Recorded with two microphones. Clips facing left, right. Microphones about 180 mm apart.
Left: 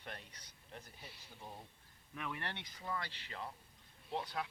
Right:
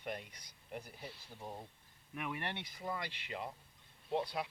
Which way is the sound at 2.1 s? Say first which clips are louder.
Right 3 dB; 15° right (ahead or behind).